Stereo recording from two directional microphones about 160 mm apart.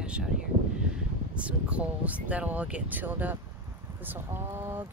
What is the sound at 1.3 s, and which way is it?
Speech, 10° right (ahead or behind).